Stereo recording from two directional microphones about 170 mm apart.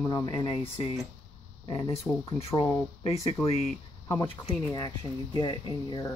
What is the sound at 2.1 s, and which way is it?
Speech, 10° left (ahead or behind).